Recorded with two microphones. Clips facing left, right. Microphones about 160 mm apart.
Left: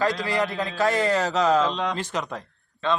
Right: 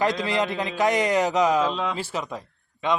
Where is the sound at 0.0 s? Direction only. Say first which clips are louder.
Right 1 dB; 20° right (ahead or behind).